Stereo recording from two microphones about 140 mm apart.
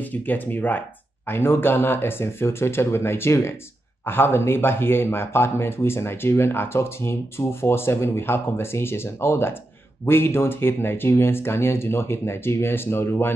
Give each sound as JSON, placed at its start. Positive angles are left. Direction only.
{"t": 0.0, "sound": "speech", "side_deg": 10}